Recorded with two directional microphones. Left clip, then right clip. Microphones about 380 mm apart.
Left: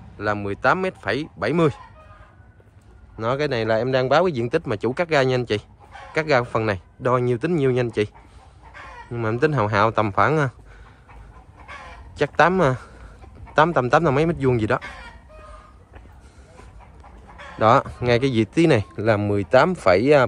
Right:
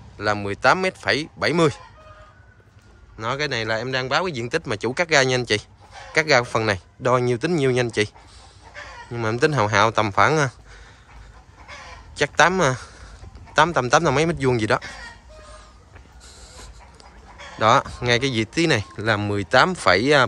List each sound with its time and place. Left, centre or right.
0.2 s speech: centre
3.2 s speech: centre
9.1 s speech: centre
11.7 s crow: left
12.2 s speech: centre
17.6 s speech: centre